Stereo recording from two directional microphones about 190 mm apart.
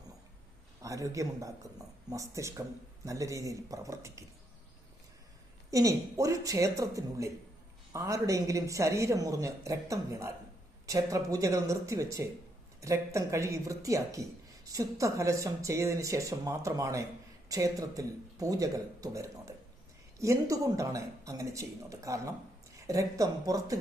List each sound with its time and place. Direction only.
0.8 s a woman's voice: 15° right (ahead or behind)
5.7 s a woman's voice: 15° right (ahead or behind)